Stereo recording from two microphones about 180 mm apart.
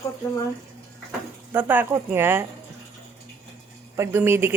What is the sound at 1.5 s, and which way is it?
Speech, 10° right (ahead or behind).